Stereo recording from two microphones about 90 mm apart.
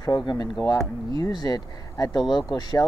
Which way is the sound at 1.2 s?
45° left (ahead or behind).